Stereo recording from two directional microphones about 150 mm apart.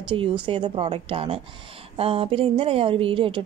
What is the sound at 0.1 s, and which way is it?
Speech, 35° right (ahead or behind).